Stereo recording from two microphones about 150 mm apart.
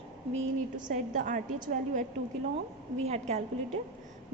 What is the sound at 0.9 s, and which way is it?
Speech, 60° right (ahead or behind).